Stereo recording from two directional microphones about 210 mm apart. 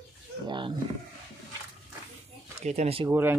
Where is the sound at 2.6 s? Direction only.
30° right (ahead or behind).